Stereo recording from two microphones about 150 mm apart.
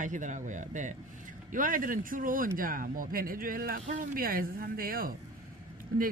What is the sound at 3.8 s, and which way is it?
Speech, 60° right (ahead or behind).